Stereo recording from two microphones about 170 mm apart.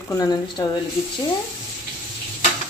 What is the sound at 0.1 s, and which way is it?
Speech, 25° left (ahead or behind).